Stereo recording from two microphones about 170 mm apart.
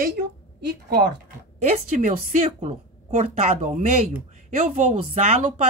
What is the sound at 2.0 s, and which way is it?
Speech, 40° right (ahead or behind).